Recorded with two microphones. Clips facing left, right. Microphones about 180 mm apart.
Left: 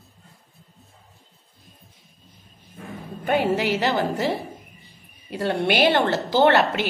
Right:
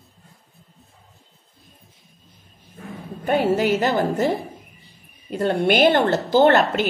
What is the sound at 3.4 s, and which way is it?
A woman's voice, 45° right (ahead or behind).